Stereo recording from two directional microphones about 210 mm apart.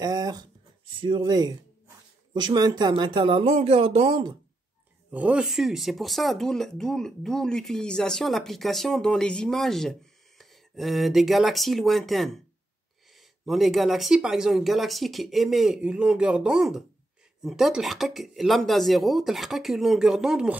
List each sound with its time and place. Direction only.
0.0 s a sound: 20° right (ahead or behind)
1.0 s speech: 20° right (ahead or behind)
5.1 s speech: 5° right (ahead or behind)
13.5 s speech: centre (ahead or behind)